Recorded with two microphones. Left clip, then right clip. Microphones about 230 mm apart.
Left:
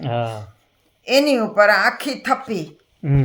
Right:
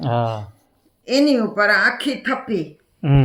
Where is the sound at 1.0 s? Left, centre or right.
Left.